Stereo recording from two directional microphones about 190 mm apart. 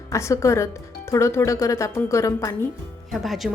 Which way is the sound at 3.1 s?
Centre (ahead or behind).